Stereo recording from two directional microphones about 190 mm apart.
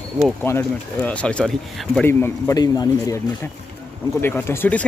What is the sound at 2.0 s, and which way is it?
A man's voice, 10° left (ahead or behind).